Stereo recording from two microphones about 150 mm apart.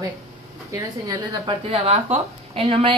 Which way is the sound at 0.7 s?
25° right (ahead or behind).